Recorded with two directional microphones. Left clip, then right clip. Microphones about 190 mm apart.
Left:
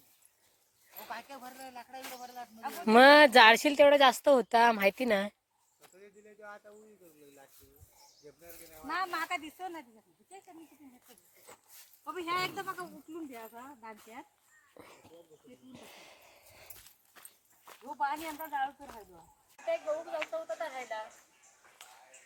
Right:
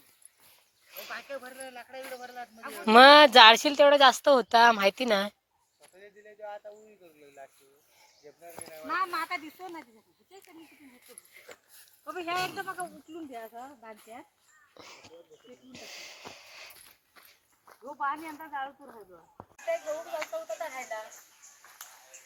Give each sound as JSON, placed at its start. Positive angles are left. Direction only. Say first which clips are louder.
{"t": 1.1, "sound": "a man's voice", "louder": "right 4 dB", "side_deg": 75}
{"t": 2.8, "sound": "speech", "louder": "right 4 dB", "side_deg": 5}
{"t": 6.0, "sound": "a sound", "louder": "right 7 dB", "side_deg": 70}
{"t": 8.9, "sound": "speech", "louder": "right 3 dB", "side_deg": 5}
{"t": 12.0, "sound": "speech", "louder": "right 2 dB", "side_deg": 10}
{"t": 13.9, "sound": "speech", "louder": "right 2 dB", "side_deg": 0}
{"t": 15.7, "sound": "a sound", "louder": "right 9 dB", "side_deg": 0}
{"t": 18.0, "sound": "speech", "louder": "right 1 dB", "side_deg": 20}
{"t": 20.1, "sound": "speech", "louder": "right 1 dB", "side_deg": 5}